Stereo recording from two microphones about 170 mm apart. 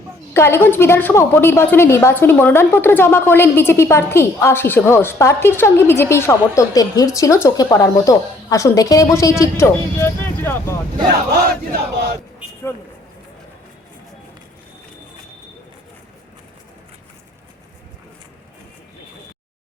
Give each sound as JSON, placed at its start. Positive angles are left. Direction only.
{"t": 0.3, "sound": "a woman's voice", "side_deg": 15}
{"t": 11.4, "sound": "battle cry", "side_deg": -65}